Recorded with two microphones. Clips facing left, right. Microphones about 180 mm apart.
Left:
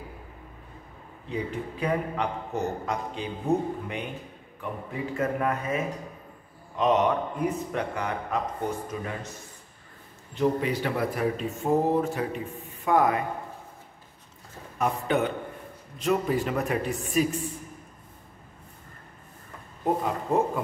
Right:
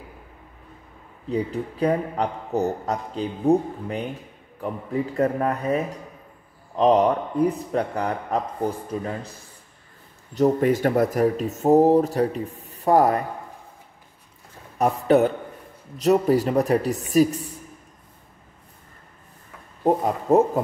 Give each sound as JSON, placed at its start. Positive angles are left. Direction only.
{"t": 1.3, "sound": "speech", "side_deg": -35}
{"t": 5.1, "sound": "speech", "side_deg": -35}
{"t": 10.3, "sound": "speech", "side_deg": -45}
{"t": 14.8, "sound": "speech", "side_deg": -40}
{"t": 19.8, "sound": "speech", "side_deg": -40}